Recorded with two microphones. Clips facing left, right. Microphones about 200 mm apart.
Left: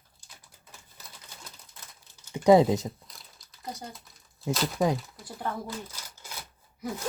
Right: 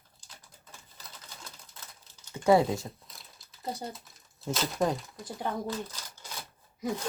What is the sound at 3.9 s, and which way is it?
Speech, centre (ahead or behind).